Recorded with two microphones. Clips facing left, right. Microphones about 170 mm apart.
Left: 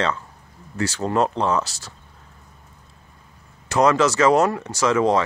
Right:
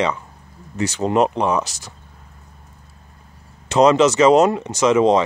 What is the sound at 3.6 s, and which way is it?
Speech, 20° right (ahead or behind).